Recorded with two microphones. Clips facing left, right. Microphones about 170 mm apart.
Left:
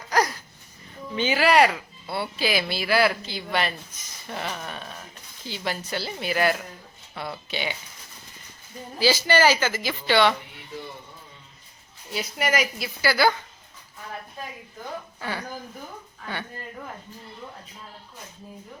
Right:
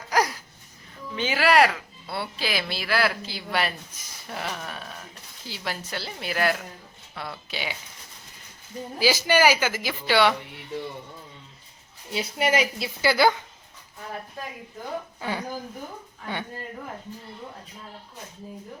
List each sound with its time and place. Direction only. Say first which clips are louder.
0.1 s a sound: left 1 dB; 5° right (ahead or behind)
1.1 s speech: left 1 dB; centre (ahead or behind)
9.0 s speech: even; 15° right (ahead or behind)
12.1 s a woman's voice: right 2 dB; 25° right (ahead or behind)
15.2 s a woman's voice: right 1 dB; 15° right (ahead or behind)